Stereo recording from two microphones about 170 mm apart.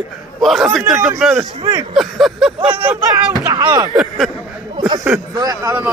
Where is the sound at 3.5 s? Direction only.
25° right (ahead or behind).